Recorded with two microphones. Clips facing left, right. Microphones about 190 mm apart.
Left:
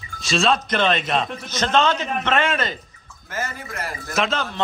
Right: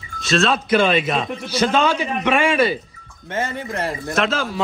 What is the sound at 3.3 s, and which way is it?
Speech, 30° right (ahead or behind).